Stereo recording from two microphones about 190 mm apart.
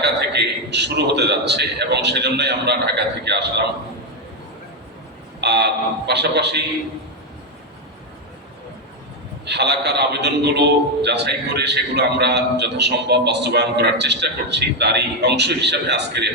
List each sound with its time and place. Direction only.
0.0 s a man's voice: 60° right (ahead or behind)
5.4 s a man's voice: 60° right (ahead or behind)
9.5 s a man's voice: 60° right (ahead or behind)